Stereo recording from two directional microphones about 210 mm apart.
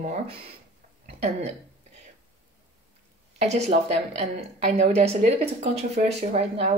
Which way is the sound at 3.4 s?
30° right (ahead or behind).